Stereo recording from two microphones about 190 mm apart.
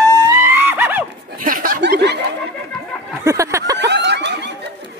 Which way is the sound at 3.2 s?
15° right (ahead or behind).